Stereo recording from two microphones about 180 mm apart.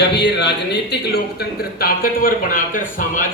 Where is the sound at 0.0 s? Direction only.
70° left (ahead or behind).